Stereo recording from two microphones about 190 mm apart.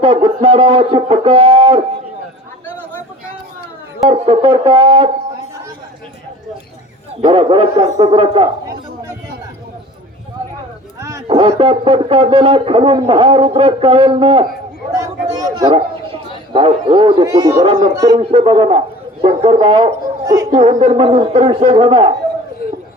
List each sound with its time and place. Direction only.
0.0 s a man's voice: 30° right (ahead or behind)
2.6 s a sound: 10° left (ahead or behind)
4.1 s a man's voice: 30° right (ahead or behind)
7.3 s a man's voice: 30° right (ahead or behind)
11.3 s a man's voice: 30° right (ahead or behind)
14.9 s chatter: 20° right (ahead or behind)
16.5 s a man's voice: 25° right (ahead or behind)
20.2 s a sound: 20° right (ahead or behind)
20.5 s a man's voice: 35° right (ahead or behind)